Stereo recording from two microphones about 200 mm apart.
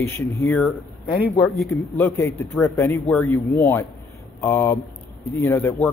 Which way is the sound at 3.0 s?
Centre (ahead or behind).